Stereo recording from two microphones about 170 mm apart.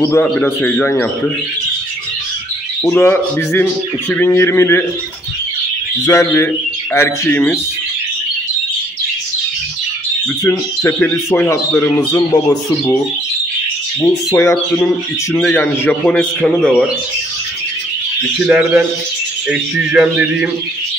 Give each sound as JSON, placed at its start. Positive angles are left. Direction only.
{"t": 0.0, "sound": "speech", "side_deg": 10}
{"t": 2.8, "sound": "speech", "side_deg": 10}
{"t": 6.0, "sound": "speech", "side_deg": 15}
{"t": 10.4, "sound": "speech", "side_deg": 15}
{"t": 14.0, "sound": "a man's voice", "side_deg": 15}
{"t": 18.4, "sound": "a man's voice", "side_deg": -5}